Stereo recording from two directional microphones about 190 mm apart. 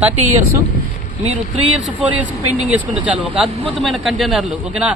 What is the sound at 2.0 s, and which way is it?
Speech, 10° right (ahead or behind).